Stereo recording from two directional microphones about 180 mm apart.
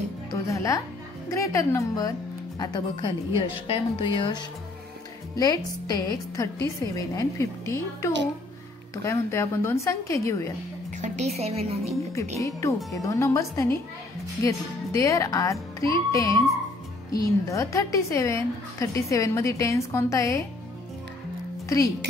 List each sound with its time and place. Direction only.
0.5 s music: 15° left (ahead or behind)
1.3 s a woman's voice: 15° left (ahead or behind)
11.0 s a woman's voice: 40° right (ahead or behind)
12.4 s a woman's voice: 15° left (ahead or behind)
17.5 s a woman's voice: 15° left (ahead or behind)
21.6 s speech: 15° left (ahead or behind)